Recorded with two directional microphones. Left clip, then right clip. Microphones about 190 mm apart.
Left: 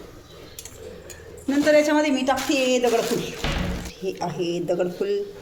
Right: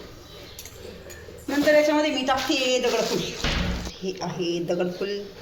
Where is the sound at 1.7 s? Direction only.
65° left (ahead or behind).